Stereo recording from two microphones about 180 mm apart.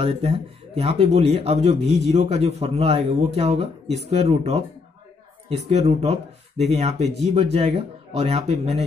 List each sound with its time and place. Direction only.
0.0 s speech: 35° right (ahead or behind)
1.8 s a man's voice: centre (ahead or behind)
2.1 s speech: 35° right (ahead or behind)
5.7 s speech: 35° right (ahead or behind)